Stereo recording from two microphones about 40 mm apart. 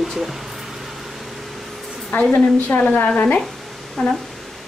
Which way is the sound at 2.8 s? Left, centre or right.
Left.